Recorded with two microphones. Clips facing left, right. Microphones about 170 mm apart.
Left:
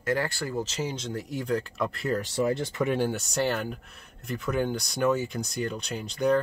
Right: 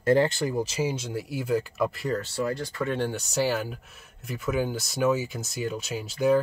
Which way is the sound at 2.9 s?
5° left (ahead or behind).